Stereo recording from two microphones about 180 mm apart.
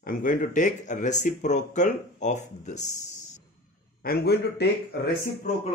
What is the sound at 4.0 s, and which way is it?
A man's voice, 60° left (ahead or behind).